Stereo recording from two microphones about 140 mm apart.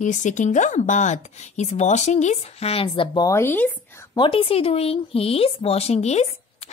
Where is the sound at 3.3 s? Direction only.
15° left (ahead or behind).